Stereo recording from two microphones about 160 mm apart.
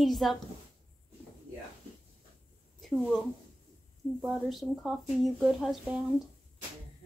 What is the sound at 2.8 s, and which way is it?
A woman's voice, centre (ahead or behind).